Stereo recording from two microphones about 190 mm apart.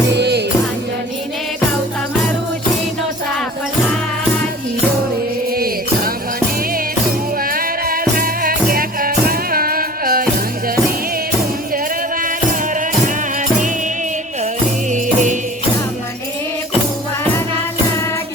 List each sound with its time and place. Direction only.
0.1 s music: 60° right (ahead or behind)
5.5 s music: 50° right (ahead or behind)
7.5 s music: 50° right (ahead or behind)
14.8 s music: 40° right (ahead or behind)